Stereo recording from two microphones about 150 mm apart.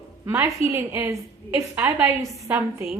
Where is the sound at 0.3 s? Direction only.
15° right (ahead or behind).